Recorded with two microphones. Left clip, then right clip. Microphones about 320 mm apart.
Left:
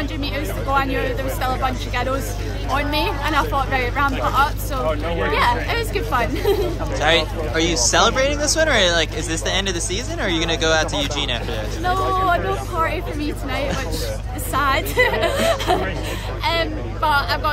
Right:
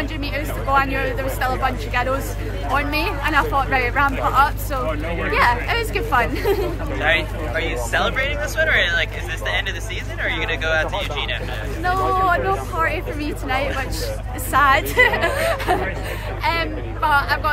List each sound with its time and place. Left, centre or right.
0.7 s speech: centre
7.0 s speech: centre
11.8 s speech: centre